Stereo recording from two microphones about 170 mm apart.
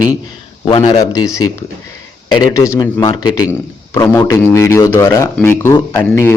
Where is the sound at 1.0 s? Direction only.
20° left (ahead or behind).